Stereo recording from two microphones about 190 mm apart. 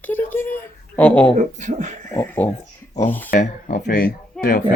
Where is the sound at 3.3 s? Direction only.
50° left (ahead or behind).